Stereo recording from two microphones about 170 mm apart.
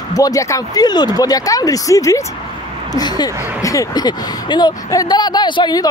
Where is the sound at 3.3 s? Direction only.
10° right (ahead or behind).